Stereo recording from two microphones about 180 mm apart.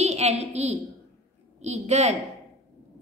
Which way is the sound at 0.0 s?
35° right (ahead or behind).